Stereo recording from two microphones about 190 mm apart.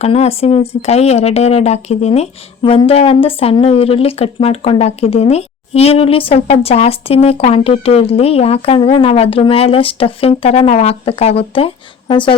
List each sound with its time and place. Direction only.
0.0 s a woman's voice: 35° left (ahead or behind)